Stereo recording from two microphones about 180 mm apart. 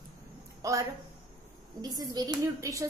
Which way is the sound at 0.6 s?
20° right (ahead or behind).